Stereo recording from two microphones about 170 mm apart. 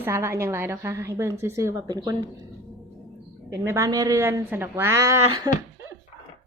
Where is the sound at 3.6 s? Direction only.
15° right (ahead or behind).